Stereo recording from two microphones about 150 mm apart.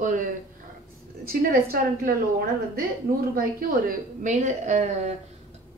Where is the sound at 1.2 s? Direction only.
85° right.